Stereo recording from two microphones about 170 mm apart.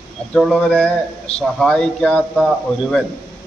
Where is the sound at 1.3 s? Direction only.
40° left (ahead or behind).